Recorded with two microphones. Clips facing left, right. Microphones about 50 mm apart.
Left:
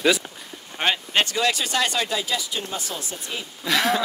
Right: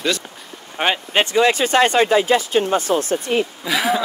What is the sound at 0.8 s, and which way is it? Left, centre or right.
Speech, centre.